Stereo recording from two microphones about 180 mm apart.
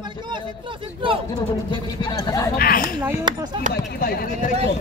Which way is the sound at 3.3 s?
25° right (ahead or behind).